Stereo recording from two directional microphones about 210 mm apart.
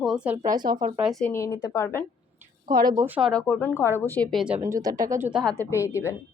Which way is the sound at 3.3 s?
5° left (ahead or behind).